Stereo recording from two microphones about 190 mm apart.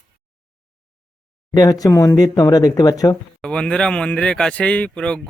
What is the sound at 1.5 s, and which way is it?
Speech, 20° left (ahead or behind).